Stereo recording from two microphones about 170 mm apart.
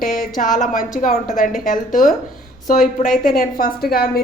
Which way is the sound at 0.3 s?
50° left (ahead or behind).